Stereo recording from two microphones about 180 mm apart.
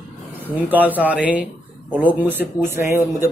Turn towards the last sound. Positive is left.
turn(degrees=-15)  # may be behind; listen again after turning